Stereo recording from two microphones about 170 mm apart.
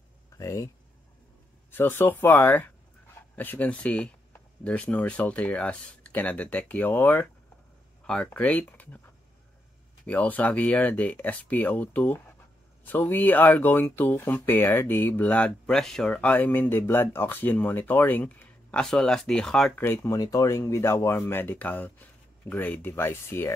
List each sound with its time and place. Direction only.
0.4 s speech: 15° left (ahead or behind)
1.7 s speech: 10° left (ahead or behind)
10.0 s speech: 10° left (ahead or behind)
19.8 s speech: 15° left (ahead or behind)